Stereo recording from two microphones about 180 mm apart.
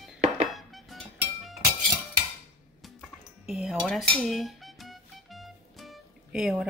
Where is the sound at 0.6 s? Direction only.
Centre (ahead or behind).